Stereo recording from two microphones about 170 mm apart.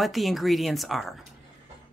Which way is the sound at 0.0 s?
Centre (ahead or behind).